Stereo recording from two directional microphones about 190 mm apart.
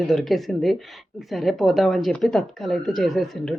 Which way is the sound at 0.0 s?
Centre (ahead or behind).